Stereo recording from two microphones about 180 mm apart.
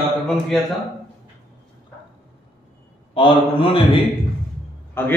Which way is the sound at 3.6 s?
30° left (ahead or behind).